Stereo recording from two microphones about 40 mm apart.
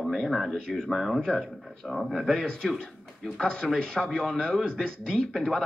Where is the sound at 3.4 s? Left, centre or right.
Left.